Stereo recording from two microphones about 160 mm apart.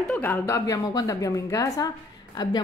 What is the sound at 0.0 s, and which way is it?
A woman's voice, 10° left (ahead or behind).